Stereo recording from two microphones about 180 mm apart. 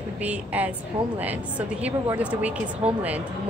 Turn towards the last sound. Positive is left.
turn(degrees=-10)  # may be behind; listen again after turning